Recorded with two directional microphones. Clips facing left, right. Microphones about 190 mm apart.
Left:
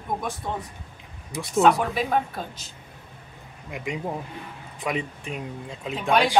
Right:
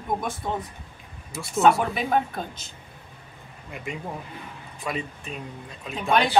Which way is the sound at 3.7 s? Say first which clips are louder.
Left 4 dB; 15° left (ahead or behind).